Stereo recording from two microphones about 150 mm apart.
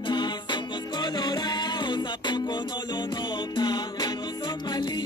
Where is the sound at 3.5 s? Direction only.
30° left (ahead or behind).